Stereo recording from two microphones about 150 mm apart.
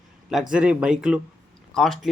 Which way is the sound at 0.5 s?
5° right (ahead or behind).